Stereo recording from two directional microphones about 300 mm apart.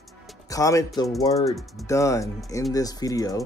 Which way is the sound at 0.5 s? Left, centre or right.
Centre.